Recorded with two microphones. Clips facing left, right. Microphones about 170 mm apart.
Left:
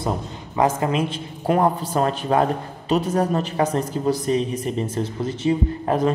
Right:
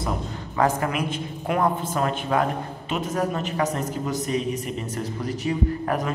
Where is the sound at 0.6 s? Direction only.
20° left (ahead or behind).